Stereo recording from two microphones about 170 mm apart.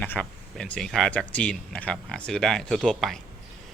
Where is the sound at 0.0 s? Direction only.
10° left (ahead or behind).